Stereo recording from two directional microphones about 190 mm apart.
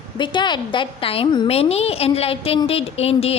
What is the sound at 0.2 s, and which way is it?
A woman's voice, 25° left (ahead or behind).